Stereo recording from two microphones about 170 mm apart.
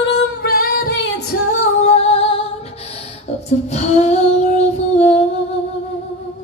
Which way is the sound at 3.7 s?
40° left (ahead or behind).